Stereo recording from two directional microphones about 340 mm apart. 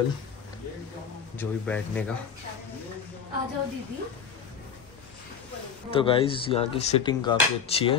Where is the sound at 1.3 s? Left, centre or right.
Centre.